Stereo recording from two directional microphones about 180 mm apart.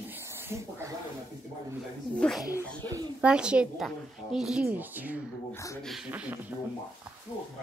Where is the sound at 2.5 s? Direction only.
20° right (ahead or behind).